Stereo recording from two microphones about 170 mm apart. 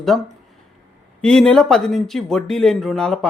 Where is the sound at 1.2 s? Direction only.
5° left (ahead or behind).